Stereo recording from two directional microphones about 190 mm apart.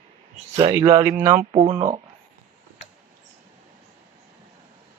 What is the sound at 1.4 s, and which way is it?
Speech, 30° right (ahead or behind).